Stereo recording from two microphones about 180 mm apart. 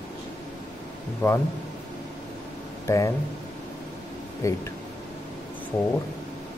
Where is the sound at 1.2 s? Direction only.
15° left (ahead or behind).